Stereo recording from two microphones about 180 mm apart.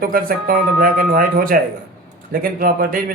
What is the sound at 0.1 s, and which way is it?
A man's voice, 55° right (ahead or behind).